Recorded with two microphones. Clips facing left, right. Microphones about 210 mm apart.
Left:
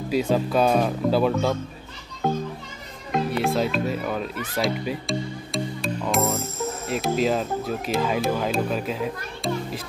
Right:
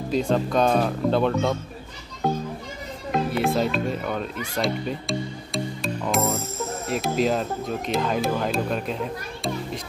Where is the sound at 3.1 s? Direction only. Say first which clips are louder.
Even; centre (ahead or behind).